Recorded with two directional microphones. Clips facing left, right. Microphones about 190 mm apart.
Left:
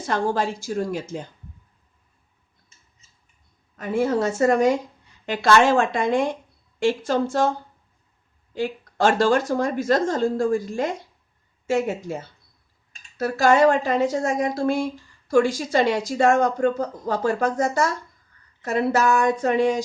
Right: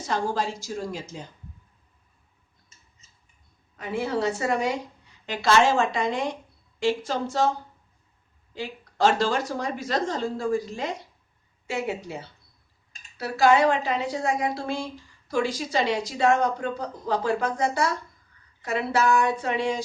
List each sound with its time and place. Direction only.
0.0 s a woman's voice: 55° left (ahead or behind)
3.8 s speech: 45° left (ahead or behind)
8.5 s speech: 50° left (ahead or behind)